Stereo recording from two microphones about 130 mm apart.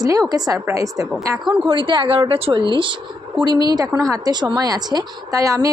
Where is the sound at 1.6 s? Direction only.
40° right (ahead or behind).